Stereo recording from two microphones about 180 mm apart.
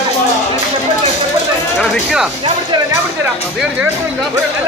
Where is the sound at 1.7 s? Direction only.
Centre (ahead or behind).